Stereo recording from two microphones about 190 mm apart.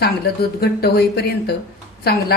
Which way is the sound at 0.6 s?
55° left (ahead or behind).